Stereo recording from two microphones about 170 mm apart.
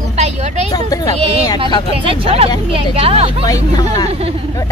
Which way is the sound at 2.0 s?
35° right (ahead or behind).